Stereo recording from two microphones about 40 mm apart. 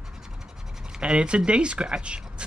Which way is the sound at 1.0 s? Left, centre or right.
Right.